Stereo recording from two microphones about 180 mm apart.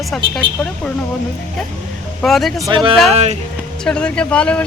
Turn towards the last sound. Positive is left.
turn(degrees=5)  # may be behind; listen again after turning